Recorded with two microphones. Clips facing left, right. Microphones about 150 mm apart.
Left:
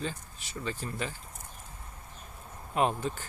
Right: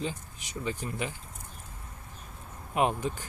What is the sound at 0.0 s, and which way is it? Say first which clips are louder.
Speech: right 2 dB; 15° right (ahead or behind).